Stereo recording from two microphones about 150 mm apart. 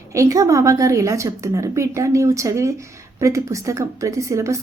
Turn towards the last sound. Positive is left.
turn(degrees=-20)  # may be behind; listen again after turning